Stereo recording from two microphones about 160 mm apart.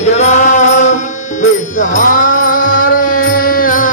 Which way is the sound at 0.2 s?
45° left (ahead or behind).